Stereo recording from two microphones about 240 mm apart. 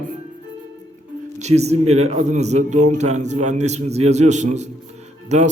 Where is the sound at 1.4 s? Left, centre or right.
Right.